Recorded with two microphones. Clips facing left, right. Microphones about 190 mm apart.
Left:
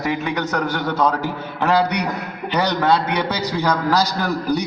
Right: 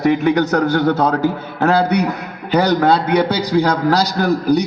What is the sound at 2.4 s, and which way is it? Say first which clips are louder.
Speech: right 5 dB; 35° right (ahead or behind).